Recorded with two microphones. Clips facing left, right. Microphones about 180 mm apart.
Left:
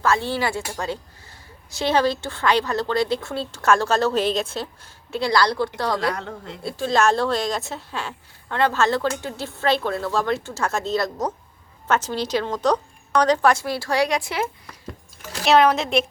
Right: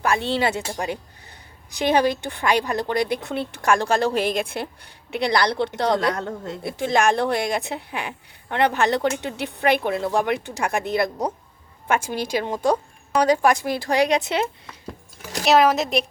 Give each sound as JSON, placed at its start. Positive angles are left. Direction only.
{"t": 0.0, "sound": "a woman's voice", "side_deg": -20}
{"t": 6.1, "sound": "speech", "side_deg": -45}
{"t": 6.6, "sound": "a woman's voice", "side_deg": -20}
{"t": 15.4, "sound": "a woman's voice", "side_deg": 0}